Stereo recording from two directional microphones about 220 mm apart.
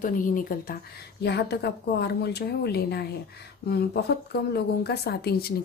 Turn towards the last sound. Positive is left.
turn(degrees=45)  # may be behind; listen again after turning